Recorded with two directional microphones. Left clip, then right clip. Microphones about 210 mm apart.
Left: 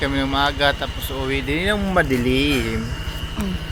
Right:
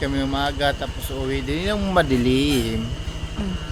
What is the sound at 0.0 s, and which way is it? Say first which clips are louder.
Speech: left 4 dB; 10° right (ahead or behind).